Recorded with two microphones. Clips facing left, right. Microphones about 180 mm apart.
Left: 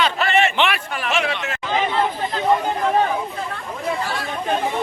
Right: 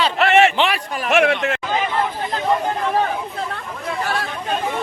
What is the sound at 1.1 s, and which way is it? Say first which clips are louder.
Speech: right 8 dB; 60° right (ahead or behind).